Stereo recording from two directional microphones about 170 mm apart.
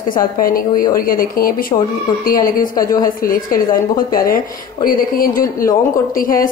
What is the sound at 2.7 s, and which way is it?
Speech, 20° left (ahead or behind).